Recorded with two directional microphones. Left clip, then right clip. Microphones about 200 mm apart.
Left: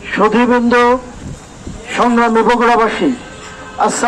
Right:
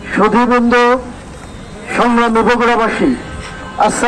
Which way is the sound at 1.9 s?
35° right (ahead or behind).